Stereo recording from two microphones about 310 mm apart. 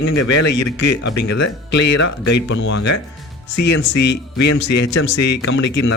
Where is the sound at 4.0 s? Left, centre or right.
Left.